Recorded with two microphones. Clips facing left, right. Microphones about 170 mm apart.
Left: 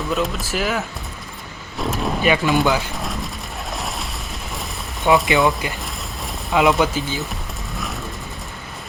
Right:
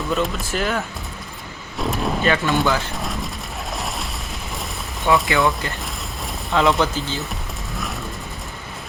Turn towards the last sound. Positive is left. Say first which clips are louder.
# even
turn(degrees=0)  # may be behind; listen again after turning